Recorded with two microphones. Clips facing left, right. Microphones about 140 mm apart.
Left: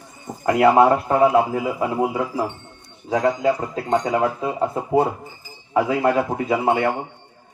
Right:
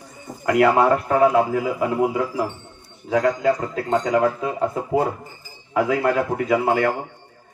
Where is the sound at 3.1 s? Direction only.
15° left (ahead or behind).